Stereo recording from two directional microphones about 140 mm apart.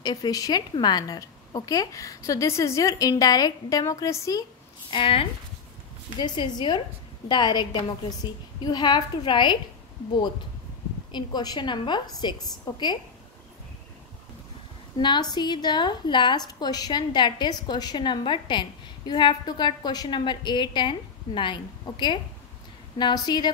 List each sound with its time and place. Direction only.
0.0 s a woman's voice: 30° left (ahead or behind)
4.9 s a woman's voice: 40° left (ahead or behind)
11.1 s a woman's voice: 30° left (ahead or behind)
15.0 s a woman's voice: 30° left (ahead or behind)